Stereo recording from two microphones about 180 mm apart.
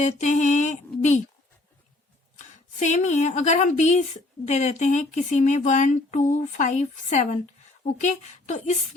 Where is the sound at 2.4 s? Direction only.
40° left (ahead or behind).